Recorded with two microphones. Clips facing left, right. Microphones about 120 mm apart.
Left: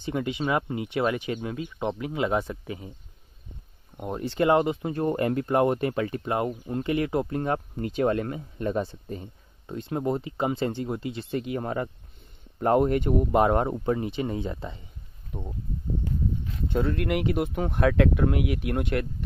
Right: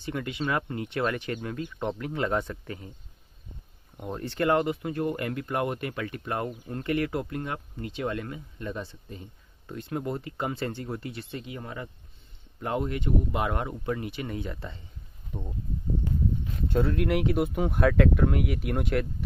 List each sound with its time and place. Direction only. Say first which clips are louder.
0.0 s speech: left 3 dB; 20° left (ahead or behind)
3.9 s speech: left 4 dB; 10° left (ahead or behind); by 9.2 s 45° left (ahead or behind)
9.7 s speech: left 4 dB; 25° left (ahead or behind)
11.2 s speech: left 9 dB; 45° left (ahead or behind); by 14.8 s 20° left (ahead or behind)
15.3 s speech: left 1 dB; 5° left (ahead or behind)
16.6 s speech: even; centre (ahead or behind)